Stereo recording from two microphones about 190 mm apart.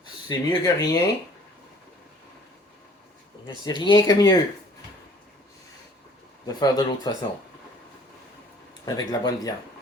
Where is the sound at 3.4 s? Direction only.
25° left (ahead or behind).